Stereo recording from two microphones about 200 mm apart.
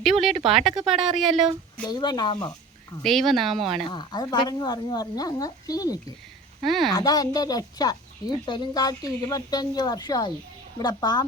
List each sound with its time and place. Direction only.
0.0 s a sound: centre (ahead or behind)
0.6 s speech: centre (ahead or behind)
1.9 s speech: 20° left (ahead or behind)
3.0 s speech: centre (ahead or behind)
3.8 s speech: 20° left (ahead or behind)
6.6 s speech: centre (ahead or behind)
6.9 s speech: 20° left (ahead or behind)